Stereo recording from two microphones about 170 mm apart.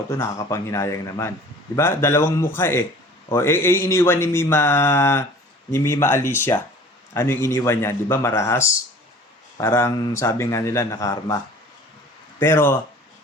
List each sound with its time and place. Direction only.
0.1 s speech: 15° left (ahead or behind)
12.4 s speech: 15° left (ahead or behind)